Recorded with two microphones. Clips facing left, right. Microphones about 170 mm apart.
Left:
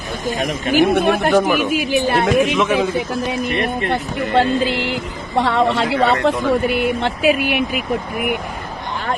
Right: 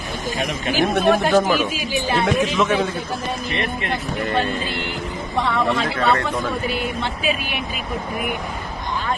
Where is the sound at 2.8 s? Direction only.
80° left.